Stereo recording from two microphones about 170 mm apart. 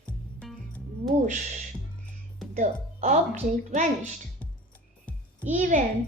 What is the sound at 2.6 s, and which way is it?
A woman's voice, 45° right (ahead or behind).